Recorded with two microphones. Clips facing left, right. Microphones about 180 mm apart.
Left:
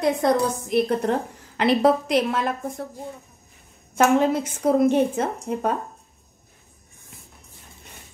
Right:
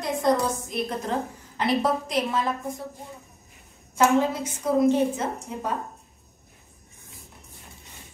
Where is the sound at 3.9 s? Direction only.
65° left (ahead or behind).